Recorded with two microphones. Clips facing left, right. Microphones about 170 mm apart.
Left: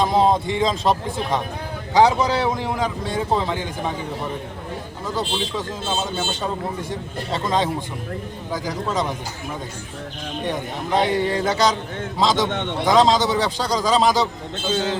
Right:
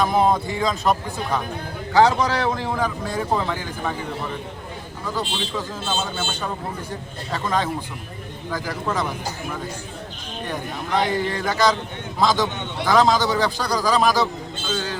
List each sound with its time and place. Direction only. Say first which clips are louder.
0.0 s a man's voice: left 1 dB; 25° left (ahead or behind)
1.9 s speech: left 1 dB; 10° left (ahead or behind)
7.3 s a man's voice: left 2 dB; 20° left (ahead or behind)
10.9 s a man's voice: left 3 dB; 25° left (ahead or behind)
12.5 s a man's voice: left 6 dB; 85° left
12.8 s a man's voice: left 1 dB; 20° left (ahead or behind)